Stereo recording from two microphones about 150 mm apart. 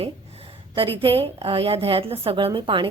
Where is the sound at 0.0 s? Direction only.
40° right (ahead or behind).